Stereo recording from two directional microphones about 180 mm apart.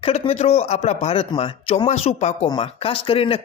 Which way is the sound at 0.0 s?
35° left (ahead or behind).